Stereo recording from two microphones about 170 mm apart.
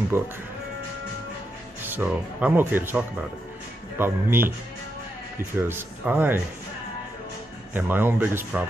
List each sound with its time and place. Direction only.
0.1 s speech: 15° right (ahead or behind)
1.8 s speech: 10° right (ahead or behind)
4.0 s speech: 15° right (ahead or behind)
5.6 s speech: 15° right (ahead or behind)
7.7 s speech: 10° right (ahead or behind)